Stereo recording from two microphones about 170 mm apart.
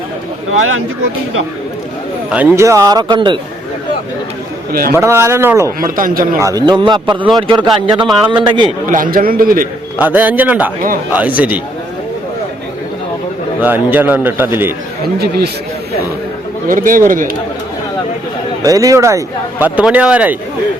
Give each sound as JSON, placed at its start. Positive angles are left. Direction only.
{"t": 2.3, "sound": "speech", "side_deg": -15}
{"t": 4.9, "sound": "a man's voice", "side_deg": -15}
{"t": 5.8, "sound": "speech", "side_deg": -50}
{"t": 6.4, "sound": "speech", "side_deg": -20}
{"t": 7.9, "sound": "speech", "side_deg": -5}
{"t": 8.3, "sound": "speech", "side_deg": -30}
{"t": 8.9, "sound": "a man's voice", "side_deg": -55}
{"t": 10.0, "sound": "a man's voice", "side_deg": -10}
{"t": 13.6, "sound": "a man's voice", "side_deg": -10}
{"t": 16.6, "sound": "speech", "side_deg": -50}
{"t": 18.6, "sound": "a man's voice", "side_deg": -20}